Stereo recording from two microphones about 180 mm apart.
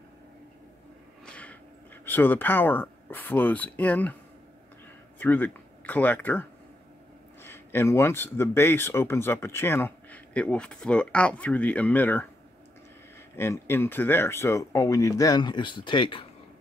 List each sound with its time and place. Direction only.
1.2 s a sound: 5° left (ahead or behind)
2.0 s speech: 10° left (ahead or behind)
5.2 s speech: 10° left (ahead or behind)
7.4 s speech: 15° left (ahead or behind)
13.4 s speech: 15° left (ahead or behind)